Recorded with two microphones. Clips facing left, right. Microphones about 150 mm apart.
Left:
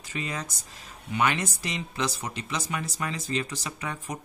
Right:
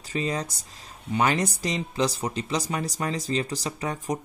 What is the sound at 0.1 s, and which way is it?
Speech, 35° right (ahead or behind).